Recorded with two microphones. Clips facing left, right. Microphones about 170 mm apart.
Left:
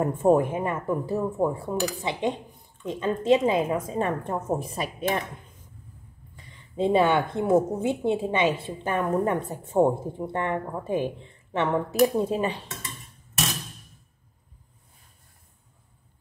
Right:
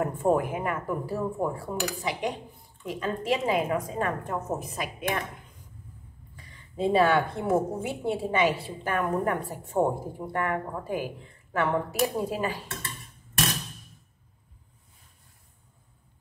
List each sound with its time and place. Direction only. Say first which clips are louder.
0.0 s a woman's voice: left 4 dB; 25° left (ahead or behind)
6.3 s a woman's voice: left 5 dB; 20° left (ahead or behind)